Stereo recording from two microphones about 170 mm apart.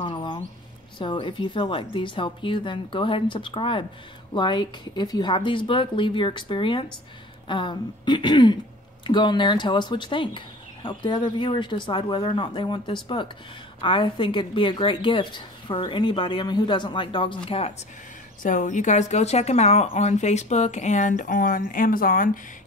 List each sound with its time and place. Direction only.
0.0 s mouse: 30° left (ahead or behind)
0.9 s speech: 30° left (ahead or behind)
18.4 s speech: 50° left (ahead or behind)